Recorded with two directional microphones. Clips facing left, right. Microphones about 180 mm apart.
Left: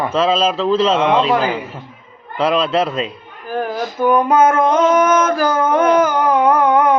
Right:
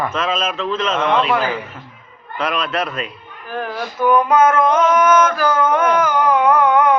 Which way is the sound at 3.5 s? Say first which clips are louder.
Left 4 dB; 35° left (ahead or behind).